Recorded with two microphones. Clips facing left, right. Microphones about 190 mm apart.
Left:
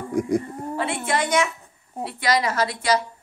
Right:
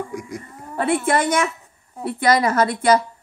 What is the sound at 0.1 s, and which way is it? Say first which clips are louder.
Speech: left 9 dB; 55° left (ahead or behind).